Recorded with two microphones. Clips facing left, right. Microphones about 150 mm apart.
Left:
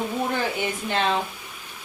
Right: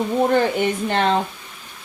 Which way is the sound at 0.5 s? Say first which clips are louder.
Right 6 dB; 60° right (ahead or behind).